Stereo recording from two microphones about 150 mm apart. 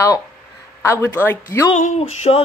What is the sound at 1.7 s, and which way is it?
Speech, 50° left (ahead or behind).